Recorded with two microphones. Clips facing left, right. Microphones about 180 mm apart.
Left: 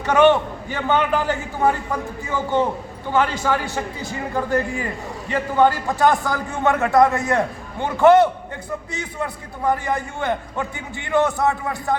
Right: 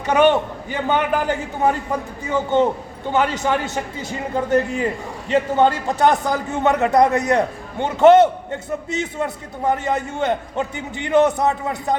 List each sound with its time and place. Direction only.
0.1 s a man's voice: 15° right (ahead or behind)